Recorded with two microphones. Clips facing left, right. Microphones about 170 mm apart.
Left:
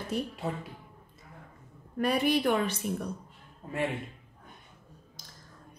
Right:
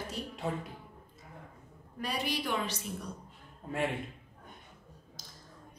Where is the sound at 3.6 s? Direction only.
Centre (ahead or behind).